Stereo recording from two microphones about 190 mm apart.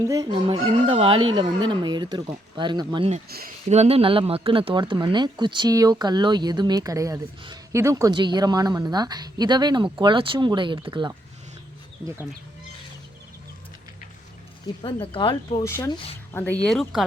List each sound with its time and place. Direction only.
0.0 s speech: 20° right (ahead or behind)
3.2 s speech: 55° right (ahead or behind)
3.7 s speech: 35° right (ahead or behind)
14.8 s speech: 25° left (ahead or behind)
15.6 s speech: 15° left (ahead or behind)